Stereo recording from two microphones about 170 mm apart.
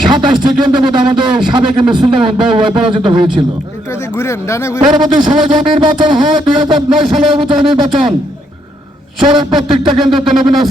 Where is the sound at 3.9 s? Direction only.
15° left (ahead or behind).